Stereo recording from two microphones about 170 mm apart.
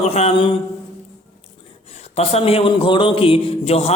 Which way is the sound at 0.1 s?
40° left (ahead or behind).